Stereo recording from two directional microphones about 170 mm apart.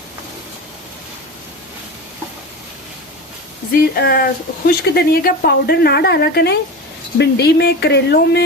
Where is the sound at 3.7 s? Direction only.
65° left (ahead or behind).